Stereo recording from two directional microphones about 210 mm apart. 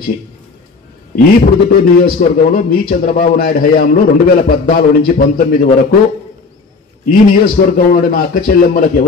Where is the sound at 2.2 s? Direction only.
45° left (ahead or behind).